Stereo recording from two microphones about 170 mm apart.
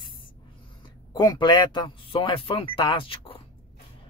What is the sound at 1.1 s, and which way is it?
Speech, 25° left (ahead or behind).